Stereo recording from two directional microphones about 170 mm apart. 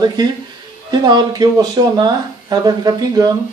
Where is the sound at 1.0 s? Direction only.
25° right (ahead or behind).